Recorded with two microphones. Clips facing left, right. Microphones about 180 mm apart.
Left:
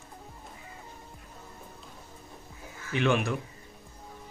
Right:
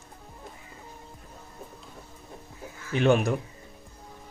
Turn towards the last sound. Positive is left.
turn(degrees=-40)  # may be behind; listen again after turning